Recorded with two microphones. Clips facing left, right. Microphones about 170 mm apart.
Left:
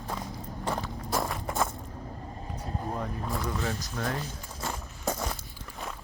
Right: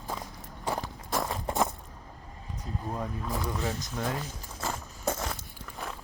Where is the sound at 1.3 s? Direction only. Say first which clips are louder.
Right 1 dB; 25° right (ahead or behind).